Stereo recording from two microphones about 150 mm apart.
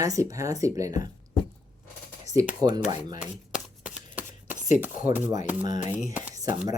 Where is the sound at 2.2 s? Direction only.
20° right (ahead or behind).